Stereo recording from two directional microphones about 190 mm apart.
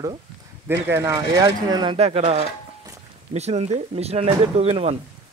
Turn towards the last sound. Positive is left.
turn(degrees=-30)  # may be behind; listen again after turning